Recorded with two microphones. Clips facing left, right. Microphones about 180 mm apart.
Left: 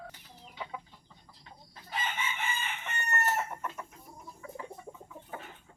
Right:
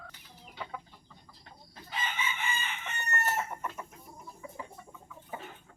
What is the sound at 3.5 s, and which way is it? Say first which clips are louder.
Chicken: even; centre (ahead or behind).